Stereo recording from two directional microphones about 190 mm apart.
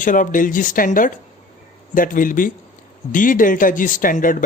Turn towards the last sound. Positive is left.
turn(degrees=45)  # may be behind; listen again after turning